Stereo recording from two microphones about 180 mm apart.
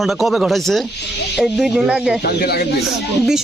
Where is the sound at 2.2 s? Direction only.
60° left (ahead or behind).